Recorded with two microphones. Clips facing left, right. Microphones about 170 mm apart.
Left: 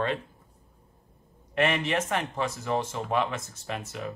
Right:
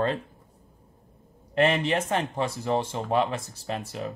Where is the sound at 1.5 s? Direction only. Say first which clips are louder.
Right 3 dB; 30° right (ahead or behind).